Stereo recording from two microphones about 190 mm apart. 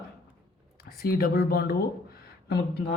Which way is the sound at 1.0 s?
55° left (ahead or behind).